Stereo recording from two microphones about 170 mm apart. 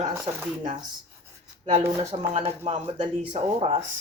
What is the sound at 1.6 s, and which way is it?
Speech, 35° right (ahead or behind).